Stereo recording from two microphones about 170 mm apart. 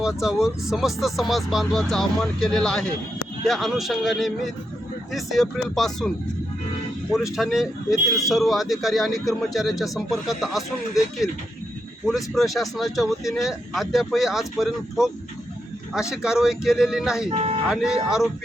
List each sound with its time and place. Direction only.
0.0 s speech: 5° right (ahead or behind)
7.3 s speech: centre (ahead or behind)
17.2 s speech: 35° right (ahead or behind)
17.7 s speech: 5° right (ahead or behind)